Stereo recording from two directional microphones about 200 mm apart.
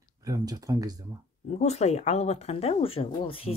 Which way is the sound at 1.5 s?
35° left (ahead or behind).